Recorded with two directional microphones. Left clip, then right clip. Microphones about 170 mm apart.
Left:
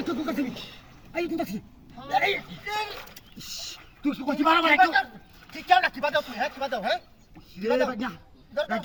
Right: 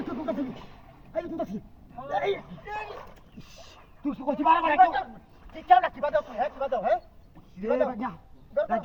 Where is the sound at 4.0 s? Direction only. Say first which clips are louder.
Left 1 dB; 5° left (ahead or behind).